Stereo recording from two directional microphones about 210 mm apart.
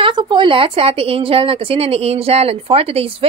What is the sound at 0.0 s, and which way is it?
A woman's voice, 20° right (ahead or behind).